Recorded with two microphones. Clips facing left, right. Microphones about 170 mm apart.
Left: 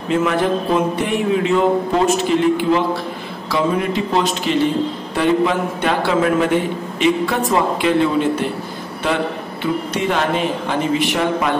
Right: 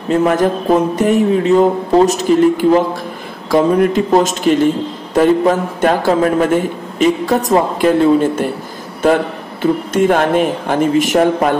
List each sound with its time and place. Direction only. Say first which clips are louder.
0.1 s a man's voice: right 4 dB; 40° right (ahead or behind)